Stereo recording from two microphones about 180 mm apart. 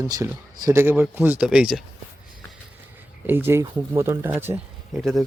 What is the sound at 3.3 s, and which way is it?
Speech, 10° right (ahead or behind).